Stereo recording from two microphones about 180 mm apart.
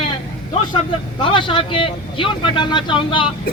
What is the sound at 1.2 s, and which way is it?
Speech, 30° left (ahead or behind).